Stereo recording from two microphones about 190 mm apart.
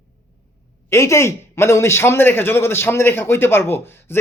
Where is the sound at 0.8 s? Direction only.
15° left (ahead or behind).